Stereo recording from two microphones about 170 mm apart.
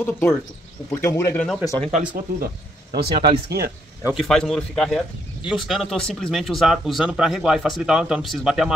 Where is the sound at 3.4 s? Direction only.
65° right (ahead or behind).